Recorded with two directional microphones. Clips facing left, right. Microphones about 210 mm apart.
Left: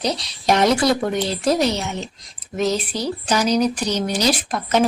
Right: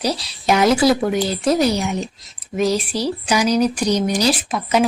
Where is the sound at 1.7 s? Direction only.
15° right (ahead or behind).